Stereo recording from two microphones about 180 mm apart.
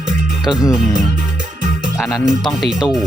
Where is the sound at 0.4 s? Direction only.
5° right (ahead or behind).